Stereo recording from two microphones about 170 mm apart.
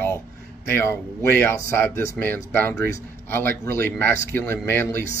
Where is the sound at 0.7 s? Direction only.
15° left (ahead or behind).